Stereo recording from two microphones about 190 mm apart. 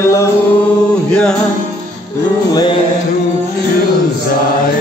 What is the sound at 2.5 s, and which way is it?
Music, 20° left (ahead or behind).